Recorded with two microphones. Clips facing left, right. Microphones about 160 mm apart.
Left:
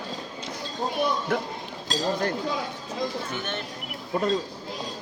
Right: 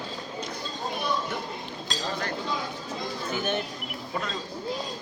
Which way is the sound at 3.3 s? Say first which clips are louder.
Right 4 dB; 10° right (ahead or behind).